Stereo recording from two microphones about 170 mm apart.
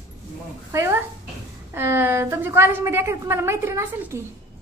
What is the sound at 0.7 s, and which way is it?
A woman's voice, 15° right (ahead or behind).